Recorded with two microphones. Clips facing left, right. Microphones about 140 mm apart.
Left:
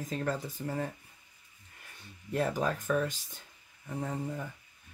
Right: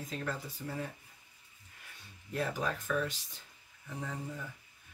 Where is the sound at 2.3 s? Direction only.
45° left (ahead or behind).